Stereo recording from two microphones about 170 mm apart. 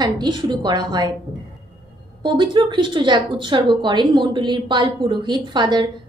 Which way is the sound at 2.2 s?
25° right (ahead or behind).